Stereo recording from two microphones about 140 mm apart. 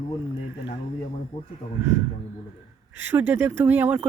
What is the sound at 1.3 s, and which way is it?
Speech, 30° left (ahead or behind).